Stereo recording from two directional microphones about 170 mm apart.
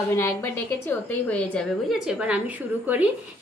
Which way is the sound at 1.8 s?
5° right (ahead or behind).